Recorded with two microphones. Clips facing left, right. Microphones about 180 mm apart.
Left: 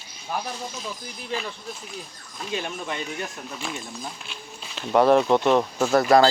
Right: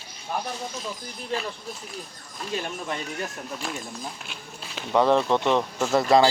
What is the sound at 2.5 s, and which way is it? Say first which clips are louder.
Speech: even; centre (ahead or behind).